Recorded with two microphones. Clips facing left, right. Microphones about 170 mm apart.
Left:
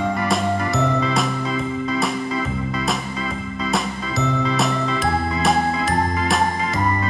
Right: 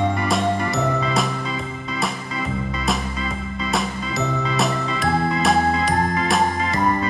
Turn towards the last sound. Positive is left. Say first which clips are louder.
# right 1 dB
turn(degrees=0)  # may be behind; listen again after turning